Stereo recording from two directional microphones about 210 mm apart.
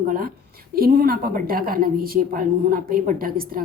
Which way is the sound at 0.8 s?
45° right (ahead or behind).